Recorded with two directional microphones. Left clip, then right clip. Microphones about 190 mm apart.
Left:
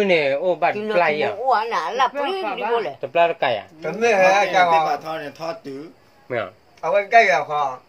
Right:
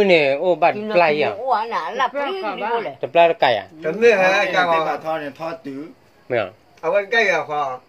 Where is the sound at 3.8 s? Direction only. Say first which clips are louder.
Right 1 dB; 10° left (ahead or behind).